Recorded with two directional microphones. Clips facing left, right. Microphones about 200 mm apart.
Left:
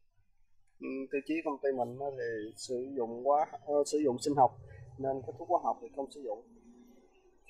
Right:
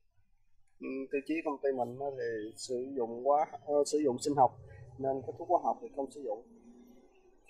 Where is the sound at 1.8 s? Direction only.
5° left (ahead or behind).